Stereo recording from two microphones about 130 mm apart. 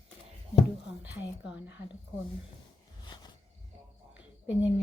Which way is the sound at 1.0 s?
10° right (ahead or behind).